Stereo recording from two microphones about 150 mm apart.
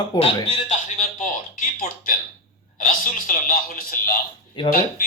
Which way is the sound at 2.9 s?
65° left (ahead or behind).